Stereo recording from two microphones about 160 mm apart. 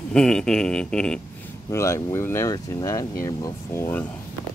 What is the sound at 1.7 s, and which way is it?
Speech, 15° left (ahead or behind).